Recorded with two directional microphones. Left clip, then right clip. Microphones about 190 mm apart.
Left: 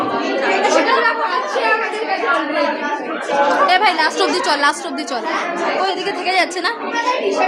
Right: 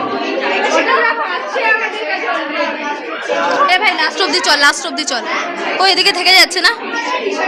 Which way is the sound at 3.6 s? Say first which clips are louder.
Right 1 dB; 25° left (ahead or behind).